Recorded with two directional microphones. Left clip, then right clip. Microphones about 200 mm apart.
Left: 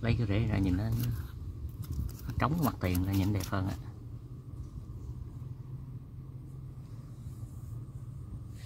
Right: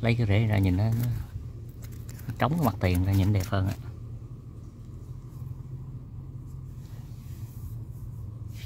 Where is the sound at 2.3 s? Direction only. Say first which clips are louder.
Right 5 dB; 10° right (ahead or behind).